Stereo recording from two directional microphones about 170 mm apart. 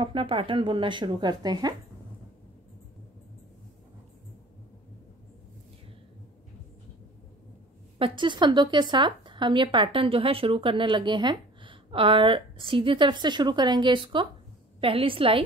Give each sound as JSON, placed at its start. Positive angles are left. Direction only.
{"t": 0.0, "sound": "a woman's voice", "side_deg": -30}
{"t": 8.0, "sound": "a woman's voice", "side_deg": -30}